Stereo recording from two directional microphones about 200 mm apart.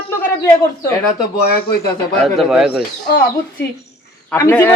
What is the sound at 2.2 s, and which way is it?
Speech, centre (ahead or behind).